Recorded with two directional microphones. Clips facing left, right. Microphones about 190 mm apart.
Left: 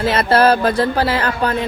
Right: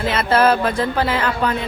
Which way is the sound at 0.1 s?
40° left (ahead or behind).